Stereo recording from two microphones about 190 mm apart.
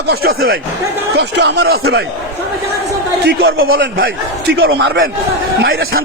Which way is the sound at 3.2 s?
75° right (ahead or behind).